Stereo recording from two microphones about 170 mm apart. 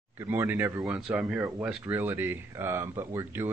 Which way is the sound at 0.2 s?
15° right (ahead or behind).